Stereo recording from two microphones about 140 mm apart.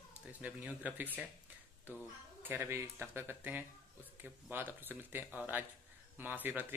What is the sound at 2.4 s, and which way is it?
Speech, 20° right (ahead or behind).